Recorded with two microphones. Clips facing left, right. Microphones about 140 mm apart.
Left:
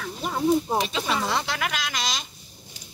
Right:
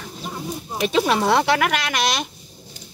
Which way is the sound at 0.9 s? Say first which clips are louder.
Right 8 dB; 70° right (ahead or behind).